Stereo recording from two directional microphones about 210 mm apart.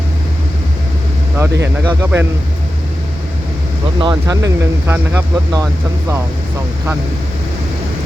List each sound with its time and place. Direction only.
1.4 s speech: 10° right (ahead or behind)
4.0 s speech: 15° right (ahead or behind)